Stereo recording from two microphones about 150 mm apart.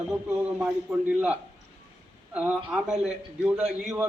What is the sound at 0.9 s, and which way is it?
Speech, 5° right (ahead or behind).